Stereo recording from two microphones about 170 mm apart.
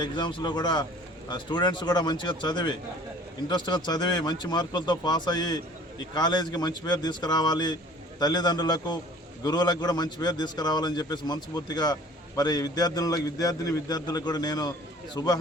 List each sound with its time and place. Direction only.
0.0 s a man's voice: 25° left (ahead or behind)